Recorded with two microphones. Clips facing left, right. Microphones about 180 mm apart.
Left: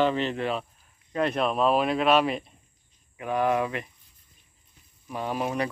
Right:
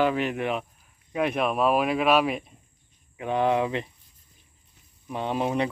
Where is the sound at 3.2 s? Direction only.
20° right (ahead or behind).